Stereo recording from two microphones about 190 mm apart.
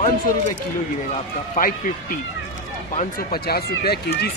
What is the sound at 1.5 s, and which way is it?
Speech, 50° left (ahead or behind).